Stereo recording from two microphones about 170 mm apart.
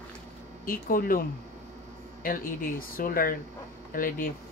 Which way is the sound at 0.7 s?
55° left (ahead or behind).